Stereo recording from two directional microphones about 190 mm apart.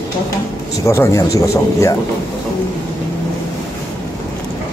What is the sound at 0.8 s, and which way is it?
A man's voice, 15° left (ahead or behind).